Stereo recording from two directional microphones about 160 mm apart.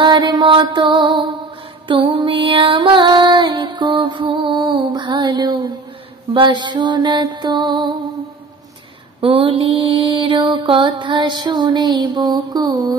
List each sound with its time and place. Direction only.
0.0 s mantra: 30° right (ahead or behind)
9.2 s mantra: 30° right (ahead or behind)